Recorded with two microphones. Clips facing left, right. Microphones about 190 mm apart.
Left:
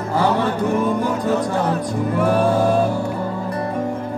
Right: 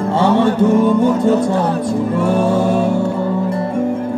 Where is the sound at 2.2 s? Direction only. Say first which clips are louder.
Even; 25° right (ahead or behind).